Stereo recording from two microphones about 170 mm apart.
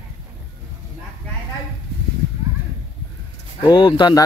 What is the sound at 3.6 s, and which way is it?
Speech, 25° left (ahead or behind).